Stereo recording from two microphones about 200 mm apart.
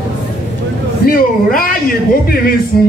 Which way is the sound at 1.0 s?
45° left (ahead or behind).